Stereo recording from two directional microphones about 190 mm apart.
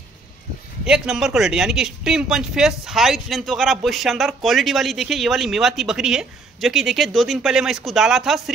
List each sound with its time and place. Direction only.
0.8 s speech: 5° right (ahead or behind)